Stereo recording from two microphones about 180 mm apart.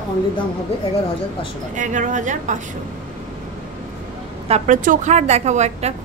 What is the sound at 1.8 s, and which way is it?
Speech, 45° right (ahead or behind).